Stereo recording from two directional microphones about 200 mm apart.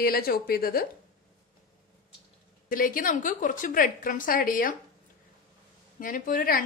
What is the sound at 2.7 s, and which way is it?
Speech, 45° left (ahead or behind).